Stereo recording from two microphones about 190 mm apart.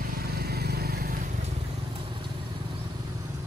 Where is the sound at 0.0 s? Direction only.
50° right (ahead or behind).